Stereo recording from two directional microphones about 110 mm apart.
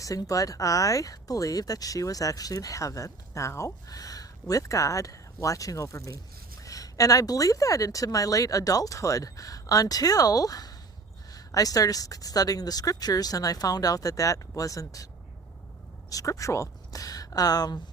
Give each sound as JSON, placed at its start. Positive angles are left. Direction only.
{"t": 0.0, "sound": "speech", "side_deg": 30}
{"t": 16.0, "sound": "a woman's voice", "side_deg": 30}